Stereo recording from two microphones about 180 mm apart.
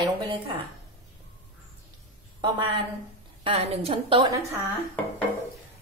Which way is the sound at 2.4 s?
25° right (ahead or behind).